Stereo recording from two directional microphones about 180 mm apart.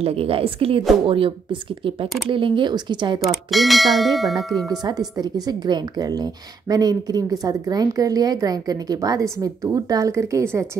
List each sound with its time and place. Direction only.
0.0 s a woman's voice: 30° right (ahead or behind)
3.5 s bell: centre (ahead or behind)
4.6 s speech: 20° right (ahead or behind)